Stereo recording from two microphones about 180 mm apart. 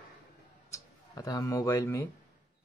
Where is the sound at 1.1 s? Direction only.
20° left (ahead or behind).